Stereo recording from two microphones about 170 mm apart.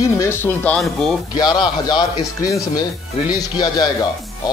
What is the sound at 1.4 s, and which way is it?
A man's voice, 25° left (ahead or behind).